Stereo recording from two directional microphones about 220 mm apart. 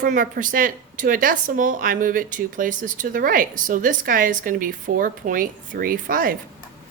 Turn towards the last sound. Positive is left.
turn(degrees=-40)  # may be behind; listen again after turning